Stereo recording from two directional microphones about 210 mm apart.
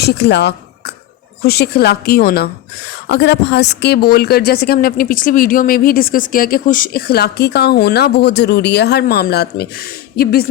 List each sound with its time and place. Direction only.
0.0 s a woman's voice: 50° left (ahead or behind)